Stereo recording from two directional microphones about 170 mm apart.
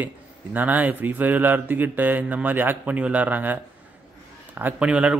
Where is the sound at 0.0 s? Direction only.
10° right (ahead or behind).